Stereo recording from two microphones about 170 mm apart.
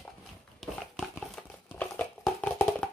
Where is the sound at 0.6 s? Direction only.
Centre (ahead or behind).